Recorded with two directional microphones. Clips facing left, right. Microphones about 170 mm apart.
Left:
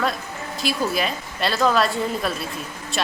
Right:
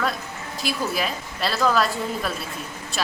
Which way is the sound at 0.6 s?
Centre (ahead or behind).